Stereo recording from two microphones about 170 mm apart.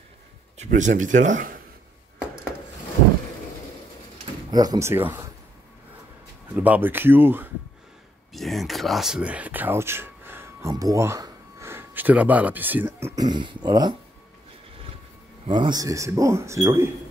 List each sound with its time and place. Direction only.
0.6 s speech: 45° right (ahead or behind)
4.5 s speech: 20° right (ahead or behind)
6.5 s speech: 10° right (ahead or behind)
8.3 s speech: centre (ahead or behind); by 13.9 s 25° right (ahead or behind)
15.4 s a man's voice: 25° right (ahead or behind)